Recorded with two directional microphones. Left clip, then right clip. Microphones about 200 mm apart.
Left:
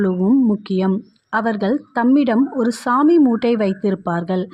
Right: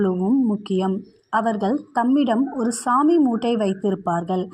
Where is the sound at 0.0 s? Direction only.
20° left (ahead or behind).